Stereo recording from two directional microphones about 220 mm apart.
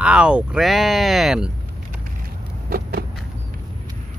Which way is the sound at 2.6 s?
45° right (ahead or behind).